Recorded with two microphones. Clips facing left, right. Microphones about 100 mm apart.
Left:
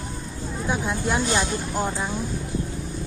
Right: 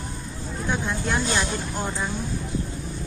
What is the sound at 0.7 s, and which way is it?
Speech, 15° left (ahead or behind).